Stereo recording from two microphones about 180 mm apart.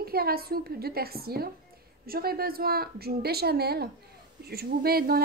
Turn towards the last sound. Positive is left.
turn(degrees=-60)  # may be behind; listen again after turning